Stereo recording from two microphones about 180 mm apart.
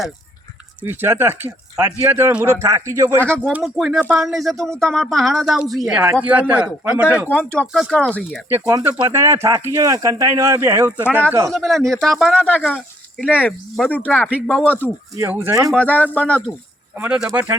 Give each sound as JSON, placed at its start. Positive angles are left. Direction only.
{"t": 0.8, "sound": "speech", "side_deg": -10}
{"t": 3.2, "sound": "speech", "side_deg": 5}
{"t": 7.3, "sound": "speech", "side_deg": 5}
{"t": 8.4, "sound": "speech", "side_deg": -15}
{"t": 11.5, "sound": "speech", "side_deg": 0}
{"t": 15.1, "sound": "speech", "side_deg": -15}
{"t": 15.7, "sound": "speech", "side_deg": 5}
{"t": 17.0, "sound": "speech", "side_deg": -5}